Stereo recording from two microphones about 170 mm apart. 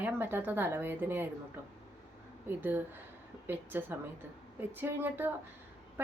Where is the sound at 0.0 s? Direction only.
10° right (ahead or behind).